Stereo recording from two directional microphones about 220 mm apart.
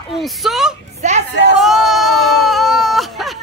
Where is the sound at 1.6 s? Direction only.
Centre (ahead or behind).